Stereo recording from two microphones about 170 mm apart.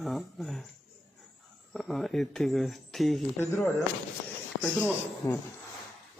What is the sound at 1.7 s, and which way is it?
Speech, centre (ahead or behind).